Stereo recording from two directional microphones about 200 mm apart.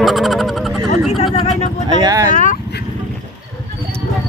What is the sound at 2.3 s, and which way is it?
Speech, 40° left (ahead or behind).